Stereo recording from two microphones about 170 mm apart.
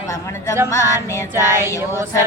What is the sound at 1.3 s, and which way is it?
Music, 15° right (ahead or behind).